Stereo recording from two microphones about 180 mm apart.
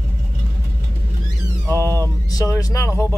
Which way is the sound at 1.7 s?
15° left (ahead or behind).